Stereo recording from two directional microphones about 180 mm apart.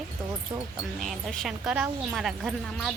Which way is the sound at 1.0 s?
Centre (ahead or behind).